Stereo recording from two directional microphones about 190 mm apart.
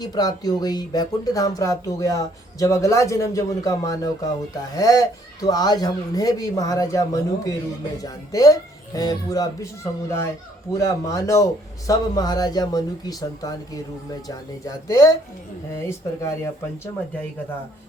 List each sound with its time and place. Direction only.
0.0 s speech: 20° left (ahead or behind)